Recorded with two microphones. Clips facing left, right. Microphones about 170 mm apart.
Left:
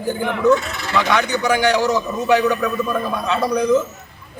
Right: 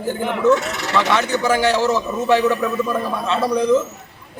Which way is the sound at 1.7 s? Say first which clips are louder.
Even; centre (ahead or behind).